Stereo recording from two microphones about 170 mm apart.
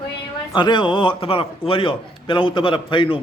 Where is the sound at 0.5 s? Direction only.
25° left (ahead or behind).